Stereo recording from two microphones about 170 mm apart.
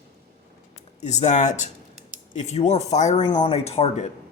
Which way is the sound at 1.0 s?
40° left (ahead or behind).